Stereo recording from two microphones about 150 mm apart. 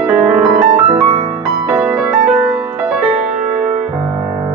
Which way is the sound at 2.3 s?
15° right (ahead or behind).